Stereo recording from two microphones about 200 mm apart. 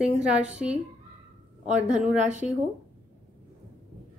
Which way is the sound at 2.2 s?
35° right (ahead or behind).